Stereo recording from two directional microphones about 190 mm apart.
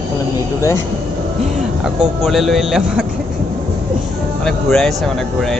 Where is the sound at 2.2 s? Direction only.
Centre (ahead or behind).